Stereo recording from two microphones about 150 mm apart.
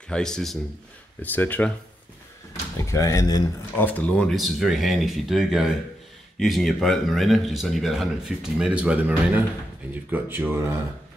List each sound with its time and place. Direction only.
0.1 s a man's voice: 5° left (ahead or behind)
2.8 s speech: 20° left (ahead or behind)
3.7 s a man's voice: 10° left (ahead or behind); by 10.8 s 15° right (ahead or behind)